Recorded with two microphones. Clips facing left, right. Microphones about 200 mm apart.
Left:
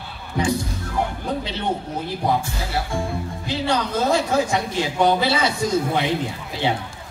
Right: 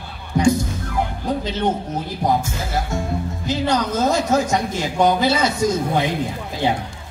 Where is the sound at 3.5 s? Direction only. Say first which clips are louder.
Right 3 dB; 45° right (ahead or behind).